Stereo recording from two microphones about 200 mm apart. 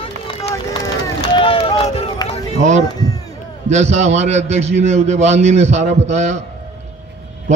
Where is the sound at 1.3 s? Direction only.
25° left (ahead or behind).